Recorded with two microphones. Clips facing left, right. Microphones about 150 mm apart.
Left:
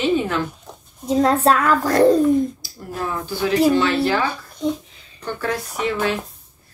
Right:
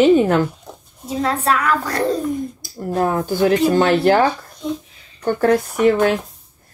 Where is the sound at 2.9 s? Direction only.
45° right (ahead or behind).